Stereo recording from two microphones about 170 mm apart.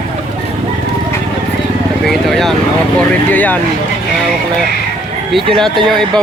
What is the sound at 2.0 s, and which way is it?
Speech, centre (ahead or behind).